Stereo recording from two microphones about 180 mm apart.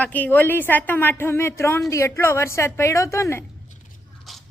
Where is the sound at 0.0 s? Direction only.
10° left (ahead or behind).